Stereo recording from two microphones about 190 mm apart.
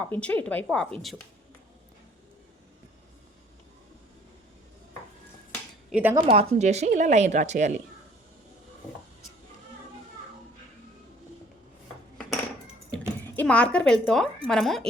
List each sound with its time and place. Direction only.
0.0 s speech: 10° left (ahead or behind)
5.9 s speech: 10° right (ahead or behind)
6.1 s speech: 30° right (ahead or behind)
12.9 s a sound: 10° left (ahead or behind)
14.4 s speech: centre (ahead or behind)